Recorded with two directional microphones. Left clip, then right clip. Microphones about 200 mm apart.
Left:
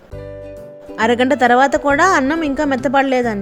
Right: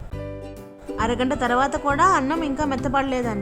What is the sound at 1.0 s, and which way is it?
A woman's voice, 15° left (ahead or behind).